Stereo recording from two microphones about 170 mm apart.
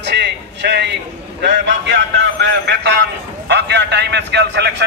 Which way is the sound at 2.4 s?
85° right.